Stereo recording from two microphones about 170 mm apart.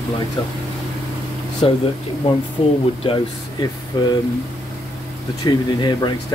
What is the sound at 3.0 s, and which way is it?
Speech, 30° left (ahead or behind).